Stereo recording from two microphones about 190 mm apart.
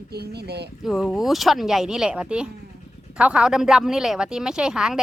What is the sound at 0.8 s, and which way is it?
Speech, centre (ahead or behind).